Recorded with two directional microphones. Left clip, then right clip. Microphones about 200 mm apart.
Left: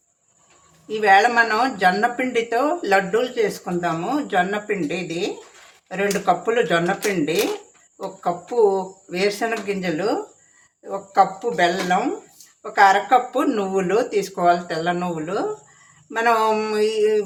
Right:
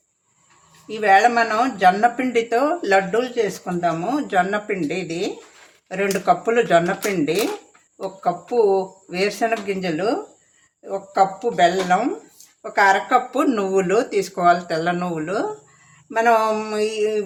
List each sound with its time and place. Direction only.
0.9 s speech: 15° right (ahead or behind)